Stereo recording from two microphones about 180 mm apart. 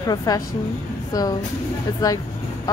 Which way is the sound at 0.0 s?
20° left (ahead or behind).